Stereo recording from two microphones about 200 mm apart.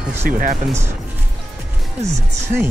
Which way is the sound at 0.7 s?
15° right (ahead or behind).